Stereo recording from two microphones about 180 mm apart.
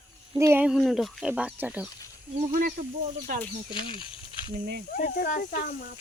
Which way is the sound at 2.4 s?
45° right (ahead or behind).